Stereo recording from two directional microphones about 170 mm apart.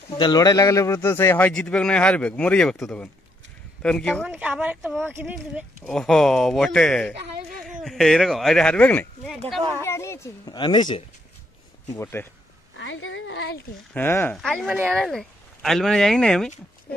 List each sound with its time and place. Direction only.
0.1 s a man's voice: 25° left (ahead or behind)
11.9 s a man's voice: 15° left (ahead or behind)
12.7 s speech: 90° left
13.9 s speech: 10° left (ahead or behind)